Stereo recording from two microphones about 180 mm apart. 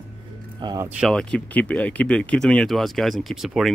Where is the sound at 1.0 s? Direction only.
5° left (ahead or behind).